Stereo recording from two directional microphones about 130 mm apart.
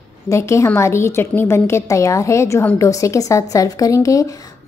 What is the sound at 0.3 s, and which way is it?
A woman's voice, 20° left (ahead or behind).